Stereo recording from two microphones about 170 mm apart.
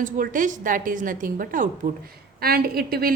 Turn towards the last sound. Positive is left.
turn(degrees=-65)  # may be behind; listen again after turning